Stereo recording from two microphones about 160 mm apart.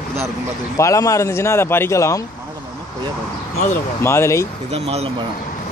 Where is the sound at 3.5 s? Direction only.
45° left (ahead or behind).